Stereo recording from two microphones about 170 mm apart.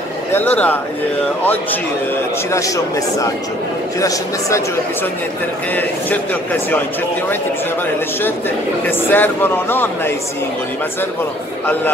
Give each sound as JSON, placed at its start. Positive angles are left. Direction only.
{"t": 0.3, "sound": "a man's voice", "side_deg": 10}
{"t": 2.5, "sound": "speech", "side_deg": 20}
{"t": 8.8, "sound": "a man's voice", "side_deg": 10}